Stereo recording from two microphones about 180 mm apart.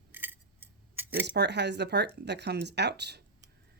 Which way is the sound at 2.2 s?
70° right (ahead or behind).